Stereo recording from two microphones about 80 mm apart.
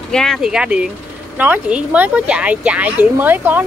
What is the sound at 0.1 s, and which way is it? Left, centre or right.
Speech, centre.